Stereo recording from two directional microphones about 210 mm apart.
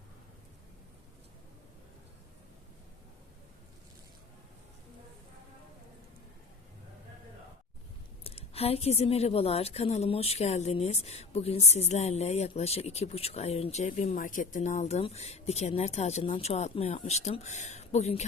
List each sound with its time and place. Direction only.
8.2 s a woman's voice: 30° left (ahead or behind)